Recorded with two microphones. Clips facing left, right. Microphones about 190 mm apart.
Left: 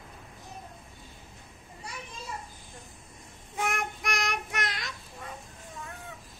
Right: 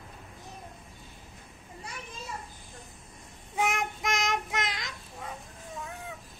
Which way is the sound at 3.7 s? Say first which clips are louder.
Right 2 dB; 20° right (ahead or behind).